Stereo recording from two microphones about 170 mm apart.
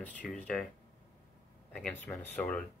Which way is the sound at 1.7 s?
5° left (ahead or behind).